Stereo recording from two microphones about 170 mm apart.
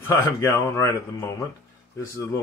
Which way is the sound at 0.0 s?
15° left (ahead or behind).